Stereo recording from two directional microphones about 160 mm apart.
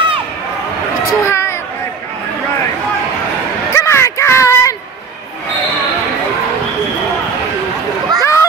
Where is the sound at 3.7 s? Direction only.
15° left (ahead or behind).